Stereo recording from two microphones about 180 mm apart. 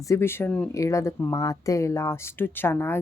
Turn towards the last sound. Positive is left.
turn(degrees=15)  # may be behind; listen again after turning